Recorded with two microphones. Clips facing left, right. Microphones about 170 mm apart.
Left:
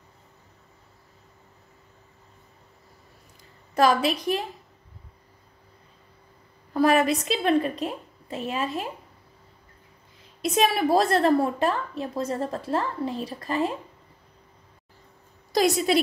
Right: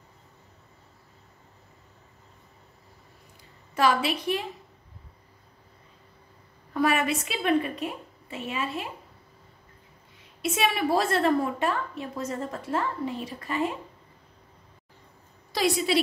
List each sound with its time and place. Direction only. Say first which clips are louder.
3.7 s a woman's voice: left 3 dB; 40° left (ahead or behind)
6.7 s a woman's voice: left 4 dB; 35° left (ahead or behind)
10.4 s a woman's voice: left 4 dB; 35° left (ahead or behind)
15.5 s a woman's voice: left 3 dB; 45° left (ahead or behind)